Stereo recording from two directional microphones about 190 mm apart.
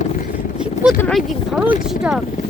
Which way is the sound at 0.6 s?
5° right (ahead or behind).